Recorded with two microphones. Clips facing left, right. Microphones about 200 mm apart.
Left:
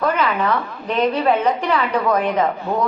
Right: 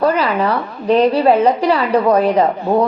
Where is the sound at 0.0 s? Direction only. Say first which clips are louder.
Right 4 dB; 35° right (ahead or behind).